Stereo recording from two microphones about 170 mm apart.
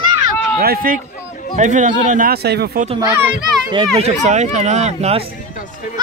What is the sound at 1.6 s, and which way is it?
A man's voice, 45° right (ahead or behind).